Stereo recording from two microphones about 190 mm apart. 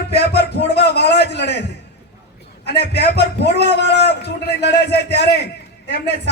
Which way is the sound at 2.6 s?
60° left (ahead or behind).